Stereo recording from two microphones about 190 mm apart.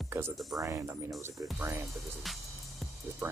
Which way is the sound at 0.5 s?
15° right (ahead or behind).